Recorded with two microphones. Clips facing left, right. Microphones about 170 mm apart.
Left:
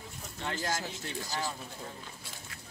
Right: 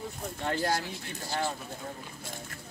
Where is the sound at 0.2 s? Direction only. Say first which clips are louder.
Right 5 dB; 50° right (ahead or behind).